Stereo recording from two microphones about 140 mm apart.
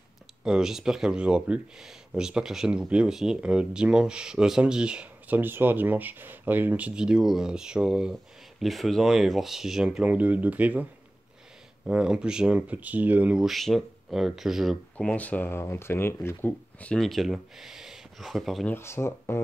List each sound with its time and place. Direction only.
0.4 s speech: 5° right (ahead or behind)
18.7 s speech: 15° left (ahead or behind)